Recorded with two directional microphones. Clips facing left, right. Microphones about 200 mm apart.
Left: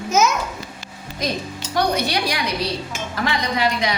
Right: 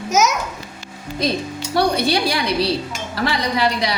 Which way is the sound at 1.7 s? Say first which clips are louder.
Right 3 dB; 30° right (ahead or behind).